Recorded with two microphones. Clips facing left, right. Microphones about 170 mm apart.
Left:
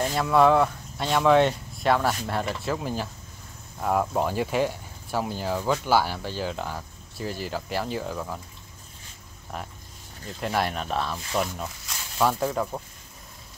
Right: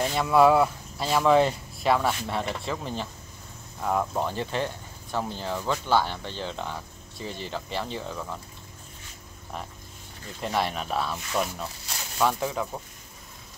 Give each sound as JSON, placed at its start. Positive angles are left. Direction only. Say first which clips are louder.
{"t": 0.1, "sound": "speech", "louder": "even", "side_deg": 0}
{"t": 10.4, "sound": "speech", "louder": "left 1 dB", "side_deg": 0}